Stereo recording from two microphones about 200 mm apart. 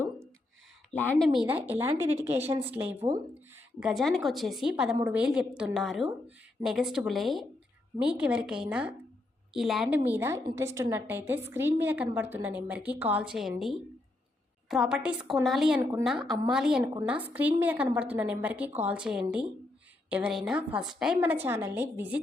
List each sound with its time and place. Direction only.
0.9 s a woman's voice: 5° left (ahead or behind)
14.7 s speech: centre (ahead or behind)
15.8 s a woman's voice: 15° right (ahead or behind)
16.0 s a woman's voice: centre (ahead or behind)